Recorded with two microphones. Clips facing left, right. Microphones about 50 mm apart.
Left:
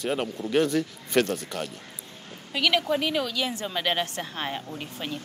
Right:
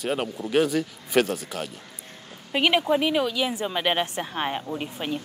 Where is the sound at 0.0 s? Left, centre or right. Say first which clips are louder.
Right 1 dB; centre.